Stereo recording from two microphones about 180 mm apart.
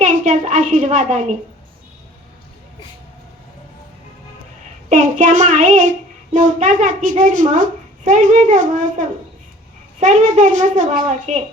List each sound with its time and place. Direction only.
0.0 s a woman's voice: 40° right (ahead or behind)
4.9 s a child's voice: 45° right (ahead or behind)